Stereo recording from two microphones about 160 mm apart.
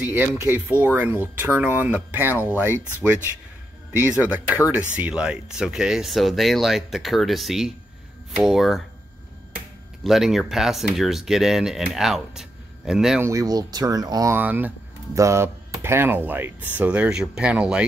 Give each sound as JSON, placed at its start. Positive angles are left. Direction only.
{"t": 0.0, "sound": "speech", "side_deg": -10}
{"t": 4.2, "sound": "speech", "side_deg": -10}
{"t": 10.0, "sound": "speech", "side_deg": 0}
{"t": 13.2, "sound": "speech", "side_deg": -20}
{"t": 14.4, "sound": "speech", "side_deg": -10}